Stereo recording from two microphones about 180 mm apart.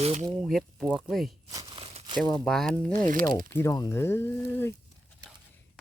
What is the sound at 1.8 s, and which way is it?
Crumpling, 35° right (ahead or behind).